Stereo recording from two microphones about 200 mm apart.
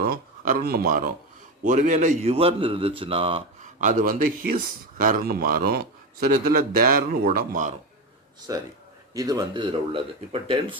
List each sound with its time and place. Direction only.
0.0 s a man's voice: 45° right (ahead or behind); by 3.7 s 25° right (ahead or behind)
3.8 s speech: 40° right (ahead or behind)
8.5 s a man's voice: 15° right (ahead or behind)